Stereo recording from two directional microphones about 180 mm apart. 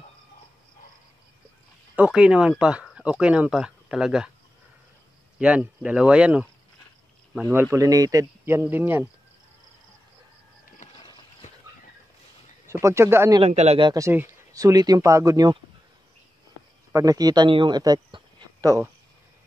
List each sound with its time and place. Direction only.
2.0 s speech: 5° right (ahead or behind)
5.4 s speech: 5° right (ahead or behind)
12.6 s speech: 15° right (ahead or behind)
13.4 s speech: 35° right (ahead or behind)
13.8 s speech: 15° right (ahead or behind)
16.9 s speech: 20° right (ahead or behind)